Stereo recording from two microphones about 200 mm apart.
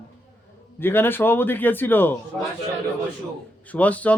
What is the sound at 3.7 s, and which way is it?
Speech, 5° left (ahead or behind).